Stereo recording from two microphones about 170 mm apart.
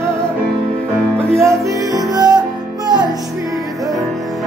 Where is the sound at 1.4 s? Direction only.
20° right (ahead or behind).